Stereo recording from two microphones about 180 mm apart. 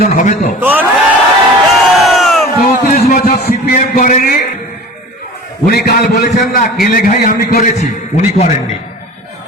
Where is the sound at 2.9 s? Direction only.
45° left (ahead or behind).